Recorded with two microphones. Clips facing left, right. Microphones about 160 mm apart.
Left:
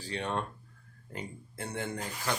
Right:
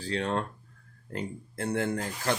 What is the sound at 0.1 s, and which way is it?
Speech, 90° right.